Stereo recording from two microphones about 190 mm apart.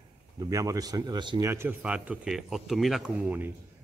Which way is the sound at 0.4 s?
15° right (ahead or behind).